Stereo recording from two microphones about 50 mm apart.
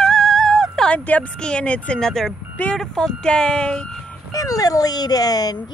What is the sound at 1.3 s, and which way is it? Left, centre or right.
Speech, centre.